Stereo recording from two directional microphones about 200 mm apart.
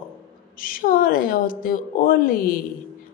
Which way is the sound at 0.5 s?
45° left (ahead or behind).